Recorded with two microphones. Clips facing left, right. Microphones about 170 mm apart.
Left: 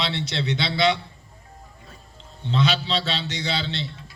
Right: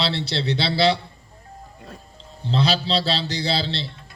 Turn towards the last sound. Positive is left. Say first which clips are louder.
# right 3 dB
turn(degrees=-35)  # may be behind; listen again after turning